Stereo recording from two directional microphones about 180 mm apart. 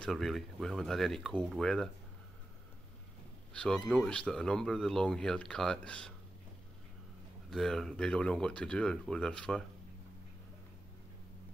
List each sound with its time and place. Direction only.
0.0 s speech: centre (ahead or behind)
3.5 s speech: 5° left (ahead or behind)
7.5 s speech: centre (ahead or behind)